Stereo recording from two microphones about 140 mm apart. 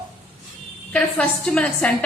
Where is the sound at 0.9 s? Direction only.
10° left (ahead or behind).